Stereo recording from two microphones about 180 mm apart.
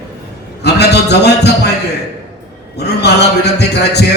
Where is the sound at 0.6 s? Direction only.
65° left (ahead or behind).